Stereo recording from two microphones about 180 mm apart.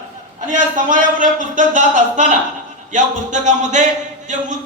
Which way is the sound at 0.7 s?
45° right (ahead or behind).